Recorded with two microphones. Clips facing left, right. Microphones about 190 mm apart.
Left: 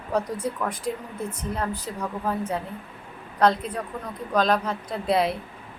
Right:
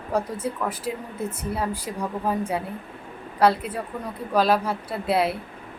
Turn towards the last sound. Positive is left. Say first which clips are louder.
# even
turn(degrees=-5)  # may be behind; listen again after turning